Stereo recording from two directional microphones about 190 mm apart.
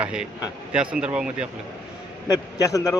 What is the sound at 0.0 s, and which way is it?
Speech, 5° right (ahead or behind).